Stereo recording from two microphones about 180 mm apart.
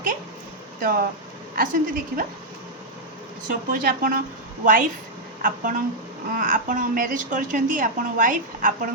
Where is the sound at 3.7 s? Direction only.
50° right (ahead or behind).